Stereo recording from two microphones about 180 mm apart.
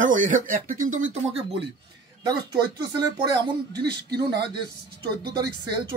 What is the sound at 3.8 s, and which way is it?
Speech, 65° right (ahead or behind).